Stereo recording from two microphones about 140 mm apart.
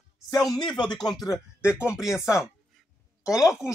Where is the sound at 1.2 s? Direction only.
20° left (ahead or behind).